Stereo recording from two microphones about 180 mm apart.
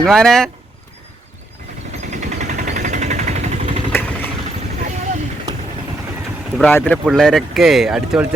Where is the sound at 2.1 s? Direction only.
40° right (ahead or behind).